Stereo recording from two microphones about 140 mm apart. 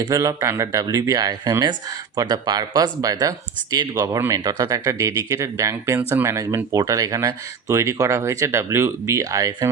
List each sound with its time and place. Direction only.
0.0 s speech: 25° right (ahead or behind)